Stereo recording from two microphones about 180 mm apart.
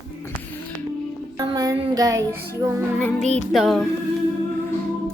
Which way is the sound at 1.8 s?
20° right (ahead or behind).